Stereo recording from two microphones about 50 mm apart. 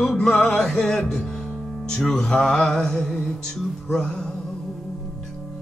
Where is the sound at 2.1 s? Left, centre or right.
Centre.